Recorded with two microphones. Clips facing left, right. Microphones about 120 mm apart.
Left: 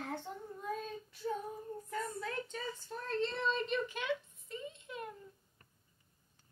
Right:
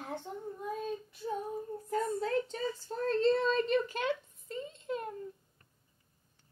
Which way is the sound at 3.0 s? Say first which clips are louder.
Right 8 dB; 35° right (ahead or behind).